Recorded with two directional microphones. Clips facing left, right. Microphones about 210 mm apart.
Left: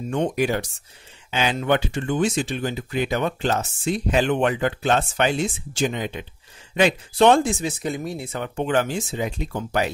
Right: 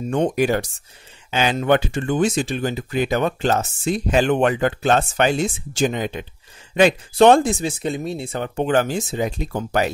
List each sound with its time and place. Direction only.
0.1 s speech: 45° right (ahead or behind)
7.6 s speech: 25° right (ahead or behind); by 9.8 s 45° right (ahead or behind)